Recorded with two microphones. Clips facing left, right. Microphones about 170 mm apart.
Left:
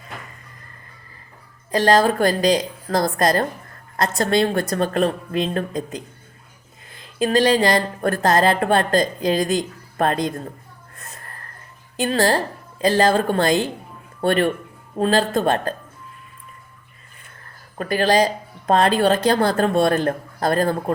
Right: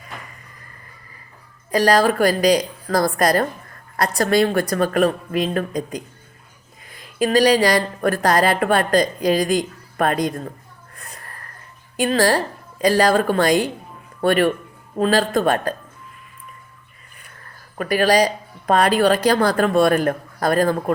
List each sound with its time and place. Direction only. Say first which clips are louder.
1.7 s speech: even; 25° left (ahead or behind)
10.9 s a sound: right 1 dB; 25° left (ahead or behind)
11.9 s speech: right 1 dB; 25° left (ahead or behind)
17.7 s speech: right 1 dB; 25° left (ahead or behind)